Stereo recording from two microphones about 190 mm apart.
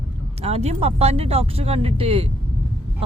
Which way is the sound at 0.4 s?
35° right (ahead or behind).